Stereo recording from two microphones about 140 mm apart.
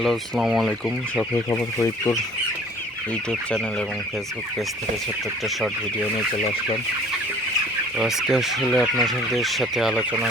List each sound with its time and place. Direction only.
0.0 s speech: centre (ahead or behind)
1.5 s speech: 20° left (ahead or behind)
7.9 s speech: 5° right (ahead or behind)